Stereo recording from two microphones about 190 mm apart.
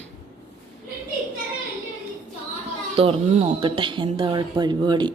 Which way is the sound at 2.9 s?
30° right (ahead or behind).